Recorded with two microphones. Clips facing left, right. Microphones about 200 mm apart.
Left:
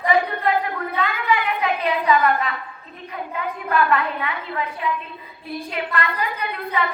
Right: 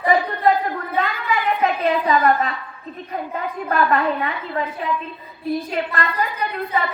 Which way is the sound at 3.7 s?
40° right (ahead or behind).